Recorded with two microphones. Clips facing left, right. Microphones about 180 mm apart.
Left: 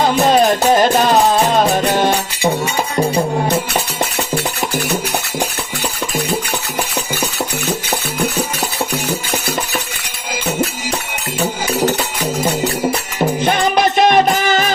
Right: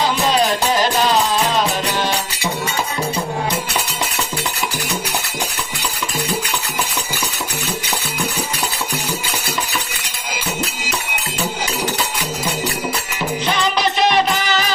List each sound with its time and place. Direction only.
0.0 s music: 50° left (ahead or behind)
13.1 s music: 50° left (ahead or behind)